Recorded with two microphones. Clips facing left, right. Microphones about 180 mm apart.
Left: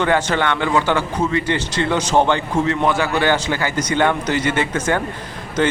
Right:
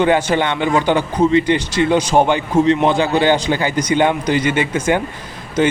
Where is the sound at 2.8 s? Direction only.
25° right (ahead or behind).